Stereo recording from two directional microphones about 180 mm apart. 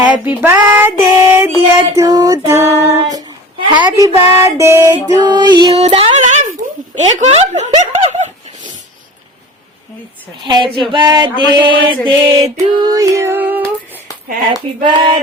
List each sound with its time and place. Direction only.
0.4 s child singing: 10° right (ahead or behind)
3.8 s music: 20° right (ahead or behind); by 7.7 s 40° right (ahead or behind)
7.8 s laughter: 35° right (ahead or behind)
10.4 s a sound: 25° right (ahead or behind)
12.5 s female singing: 20° right (ahead or behind)
14.8 s a sound: 30° right (ahead or behind)